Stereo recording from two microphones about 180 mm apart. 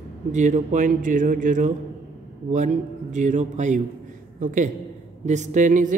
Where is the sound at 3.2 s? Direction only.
45° right (ahead or behind).